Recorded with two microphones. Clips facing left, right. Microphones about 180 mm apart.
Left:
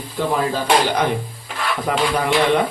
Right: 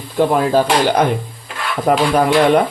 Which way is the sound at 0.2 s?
55° right (ahead or behind).